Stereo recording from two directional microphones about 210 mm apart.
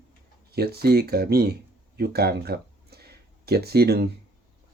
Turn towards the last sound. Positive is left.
turn(degrees=-50)  # may be behind; listen again after turning